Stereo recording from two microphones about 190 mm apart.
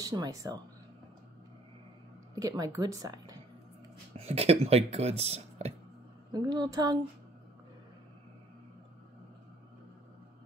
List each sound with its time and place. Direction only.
0.0 s speech: 20° right (ahead or behind)
2.3 s speech: 20° right (ahead or behind)
4.2 s speech: 30° right (ahead or behind)
6.3 s speech: 20° right (ahead or behind)